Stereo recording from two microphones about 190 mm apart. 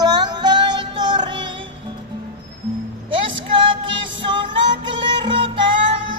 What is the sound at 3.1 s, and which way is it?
Music, 25° right (ahead or behind).